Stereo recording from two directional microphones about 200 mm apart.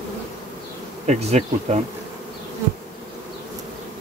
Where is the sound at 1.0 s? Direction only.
35° right (ahead or behind).